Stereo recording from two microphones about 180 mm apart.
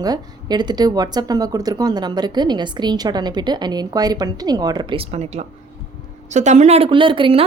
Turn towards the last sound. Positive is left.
turn(degrees=-30)  # may be behind; listen again after turning